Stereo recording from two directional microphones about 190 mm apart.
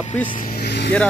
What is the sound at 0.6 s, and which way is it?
Vehicle, 60° left (ahead or behind).